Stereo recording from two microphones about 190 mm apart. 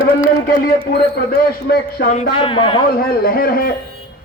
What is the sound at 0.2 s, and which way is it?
A man's voice, 50° left (ahead or behind).